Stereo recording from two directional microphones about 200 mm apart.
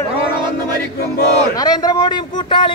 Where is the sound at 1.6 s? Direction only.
20° left (ahead or behind).